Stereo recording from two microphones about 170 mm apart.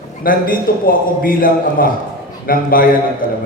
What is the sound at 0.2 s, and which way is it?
A man's voice, 55° left (ahead or behind).